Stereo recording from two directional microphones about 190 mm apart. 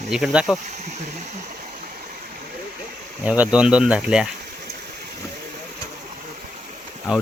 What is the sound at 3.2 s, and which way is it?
Speech, 5° right (ahead or behind).